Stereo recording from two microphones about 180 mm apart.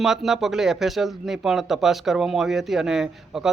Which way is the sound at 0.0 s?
Centre (ahead or behind).